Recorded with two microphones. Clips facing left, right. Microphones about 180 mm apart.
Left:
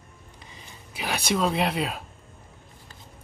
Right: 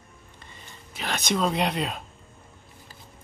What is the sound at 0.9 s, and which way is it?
Speech, 10° left (ahead or behind).